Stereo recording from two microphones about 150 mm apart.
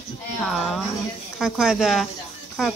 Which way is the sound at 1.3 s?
5° right (ahead or behind).